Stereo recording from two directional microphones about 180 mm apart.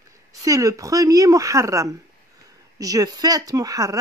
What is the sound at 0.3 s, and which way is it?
Speech, 20° right (ahead or behind).